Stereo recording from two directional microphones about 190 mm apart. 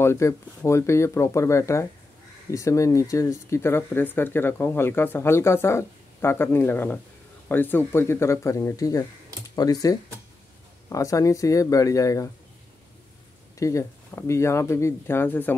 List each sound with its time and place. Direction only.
0.0 s speech: 15° left (ahead or behind)
13.6 s speech: 15° left (ahead or behind)